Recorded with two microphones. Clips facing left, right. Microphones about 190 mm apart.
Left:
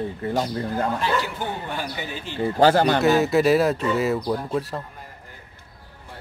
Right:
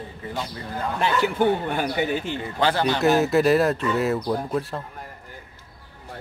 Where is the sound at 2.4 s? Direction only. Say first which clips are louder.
Left 9 dB; 40° left (ahead or behind).